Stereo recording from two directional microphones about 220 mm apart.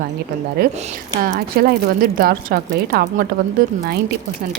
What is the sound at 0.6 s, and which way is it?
A woman's voice, 40° right (ahead or behind).